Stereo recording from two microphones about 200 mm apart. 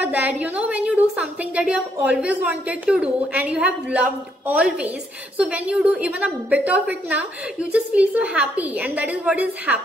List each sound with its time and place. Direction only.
0.0 s a woman's voice: 10° right (ahead or behind)